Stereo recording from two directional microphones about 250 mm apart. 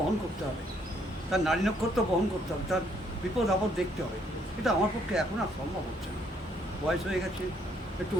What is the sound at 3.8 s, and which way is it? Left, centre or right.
Speech, centre.